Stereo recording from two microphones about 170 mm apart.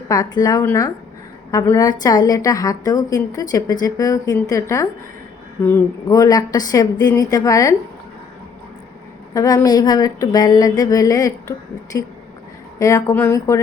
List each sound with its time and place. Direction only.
0.1 s a woman's voice: 25° left (ahead or behind)
9.3 s a woman's voice: 20° left (ahead or behind)